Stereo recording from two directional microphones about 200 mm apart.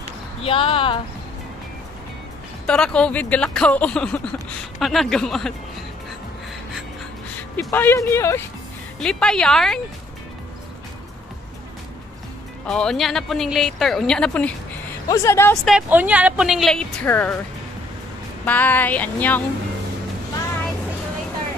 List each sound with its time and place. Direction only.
0.4 s speech: 25° left (ahead or behind)
2.6 s speech: 5° left (ahead or behind)
7.5 s speech: 10° left (ahead or behind)
9.0 s speech: 5° left (ahead or behind)
12.6 s speech: 5° left (ahead or behind)
15.6 s speech: 5° right (ahead or behind)
18.4 s speech: 10° left (ahead or behind)